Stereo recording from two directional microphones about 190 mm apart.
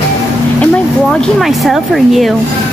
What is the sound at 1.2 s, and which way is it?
Speech, centre (ahead or behind).